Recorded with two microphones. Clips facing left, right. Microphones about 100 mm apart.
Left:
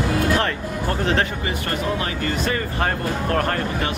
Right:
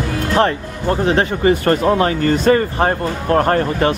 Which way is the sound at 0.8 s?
20° right (ahead or behind).